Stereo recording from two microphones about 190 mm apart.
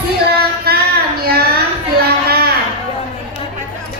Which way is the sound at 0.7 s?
55° right (ahead or behind).